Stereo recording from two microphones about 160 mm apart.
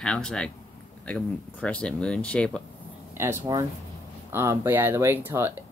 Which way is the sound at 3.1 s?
15° right (ahead or behind).